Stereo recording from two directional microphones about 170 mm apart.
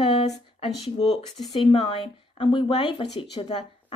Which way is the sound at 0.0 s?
35° left (ahead or behind).